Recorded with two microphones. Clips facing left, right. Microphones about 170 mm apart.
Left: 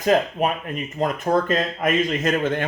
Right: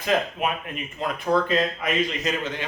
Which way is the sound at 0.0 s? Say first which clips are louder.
Left 5 dB; 40° left (ahead or behind).